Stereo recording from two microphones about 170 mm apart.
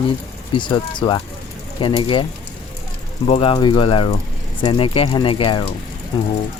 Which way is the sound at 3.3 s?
30° left (ahead or behind).